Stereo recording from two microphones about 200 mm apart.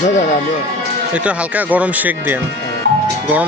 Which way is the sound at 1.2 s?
5° right (ahead or behind).